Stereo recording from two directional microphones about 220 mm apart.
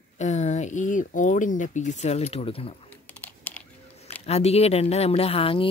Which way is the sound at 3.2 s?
5° left (ahead or behind).